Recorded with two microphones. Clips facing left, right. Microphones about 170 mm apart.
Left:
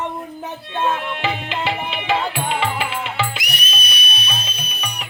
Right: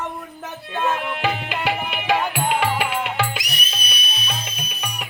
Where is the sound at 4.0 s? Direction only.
70° left (ahead or behind).